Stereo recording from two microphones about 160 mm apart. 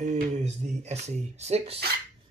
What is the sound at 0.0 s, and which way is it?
Speech, 45° right (ahead or behind).